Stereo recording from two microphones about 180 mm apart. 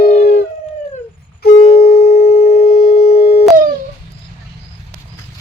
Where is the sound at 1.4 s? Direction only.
60° left (ahead or behind).